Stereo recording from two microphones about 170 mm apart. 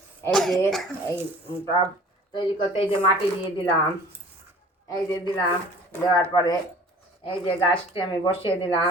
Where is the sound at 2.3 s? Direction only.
30° left (ahead or behind).